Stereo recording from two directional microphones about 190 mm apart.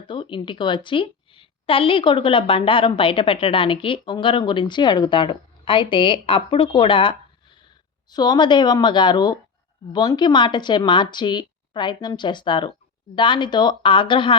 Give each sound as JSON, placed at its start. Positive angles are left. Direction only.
{"t": 0.1, "sound": "a woman's voice", "side_deg": 25}